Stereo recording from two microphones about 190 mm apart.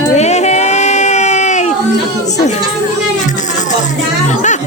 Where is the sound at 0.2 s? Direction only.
35° left (ahead or behind).